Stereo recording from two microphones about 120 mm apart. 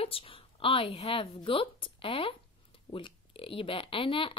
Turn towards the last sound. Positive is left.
turn(degrees=45)  # may be behind; listen again after turning